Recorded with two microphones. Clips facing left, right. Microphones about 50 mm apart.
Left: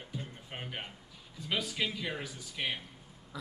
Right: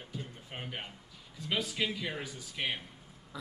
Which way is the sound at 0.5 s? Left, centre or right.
Centre.